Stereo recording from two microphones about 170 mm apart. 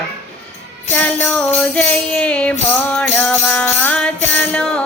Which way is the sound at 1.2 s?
5° left (ahead or behind).